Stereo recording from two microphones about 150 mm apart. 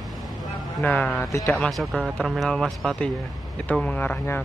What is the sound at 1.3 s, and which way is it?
Speech, 20° left (ahead or behind).